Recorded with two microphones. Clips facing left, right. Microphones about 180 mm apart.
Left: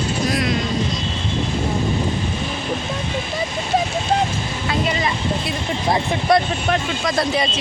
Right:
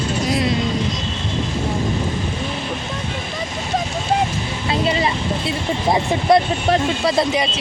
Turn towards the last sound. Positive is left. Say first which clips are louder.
# right 4 dB
turn(degrees=-30)  # may be behind; listen again after turning